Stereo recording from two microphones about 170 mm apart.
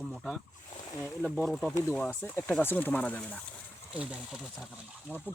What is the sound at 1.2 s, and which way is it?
Speech, centre (ahead or behind).